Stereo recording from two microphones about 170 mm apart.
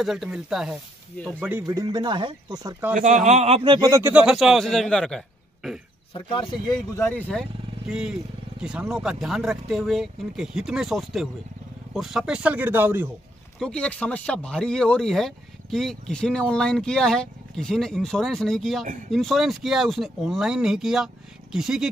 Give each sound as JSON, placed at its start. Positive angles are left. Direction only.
{"t": 0.0, "sound": "speech", "side_deg": 0}
{"t": 1.4, "sound": "speech", "side_deg": -15}
{"t": 3.3, "sound": "a man's voice", "side_deg": -40}
{"t": 3.9, "sound": "speech", "side_deg": -10}
{"t": 6.1, "sound": "speech", "side_deg": 30}
{"t": 7.0, "sound": "speech", "side_deg": 10}
{"t": 7.9, "sound": "speech", "side_deg": -5}
{"t": 13.6, "sound": "speech", "side_deg": 5}